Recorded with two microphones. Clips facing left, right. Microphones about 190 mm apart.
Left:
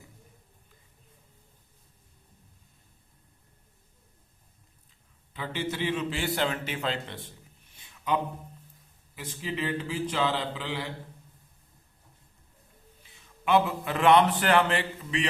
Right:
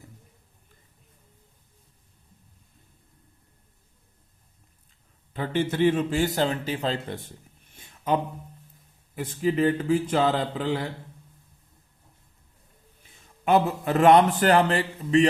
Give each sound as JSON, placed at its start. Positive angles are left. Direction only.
{"t": 5.3, "sound": "a man's voice", "side_deg": -50}
{"t": 7.8, "sound": "a sound", "side_deg": -45}
{"t": 9.1, "sound": "a man's voice", "side_deg": -50}
{"t": 13.1, "sound": "a man's voice", "side_deg": -45}